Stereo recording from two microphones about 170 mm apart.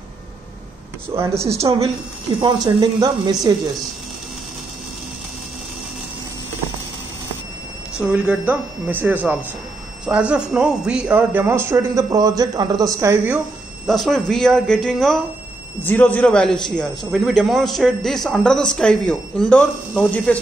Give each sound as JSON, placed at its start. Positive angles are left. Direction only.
{"t": 1.4, "sound": "speech", "side_deg": -15}
{"t": 8.0, "sound": "speech", "side_deg": -10}
{"t": 13.8, "sound": "a man's voice", "side_deg": 0}